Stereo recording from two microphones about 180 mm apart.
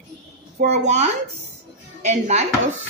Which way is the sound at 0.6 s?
40° right (ahead or behind).